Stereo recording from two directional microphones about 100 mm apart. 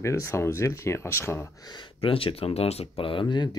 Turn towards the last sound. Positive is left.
turn(degrees=50)  # may be behind; listen again after turning